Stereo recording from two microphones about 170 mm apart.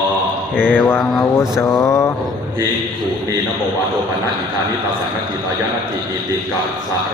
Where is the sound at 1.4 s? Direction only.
20° left (ahead or behind).